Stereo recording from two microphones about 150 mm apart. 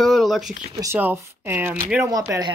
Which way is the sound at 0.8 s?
15° right (ahead or behind).